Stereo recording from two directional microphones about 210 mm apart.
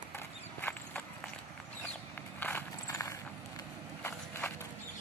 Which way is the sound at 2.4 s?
10° left (ahead or behind).